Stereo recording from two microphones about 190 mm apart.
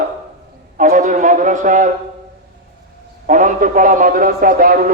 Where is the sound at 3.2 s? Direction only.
45° right (ahead or behind).